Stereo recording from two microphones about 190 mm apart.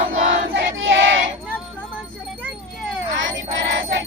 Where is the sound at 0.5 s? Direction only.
75° right (ahead or behind).